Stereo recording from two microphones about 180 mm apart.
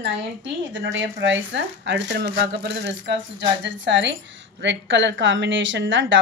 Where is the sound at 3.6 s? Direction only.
80° right.